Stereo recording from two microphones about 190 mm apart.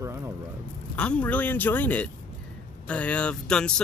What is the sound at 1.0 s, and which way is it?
Speech, 5° left (ahead or behind).